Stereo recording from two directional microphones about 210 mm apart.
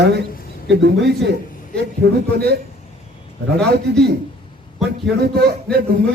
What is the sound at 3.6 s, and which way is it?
Speech, 50° right (ahead or behind).